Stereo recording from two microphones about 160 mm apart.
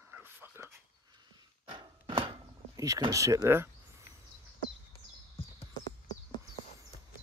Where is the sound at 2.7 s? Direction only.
20° right (ahead or behind).